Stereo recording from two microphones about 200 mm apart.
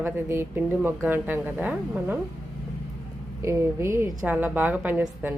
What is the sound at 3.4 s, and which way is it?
Speech, 15° right (ahead or behind).